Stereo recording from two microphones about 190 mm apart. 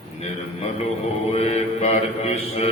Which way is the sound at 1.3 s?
35° left (ahead or behind).